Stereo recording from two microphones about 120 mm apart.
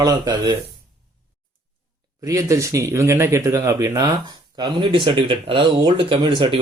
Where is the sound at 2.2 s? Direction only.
25° right (ahead or behind).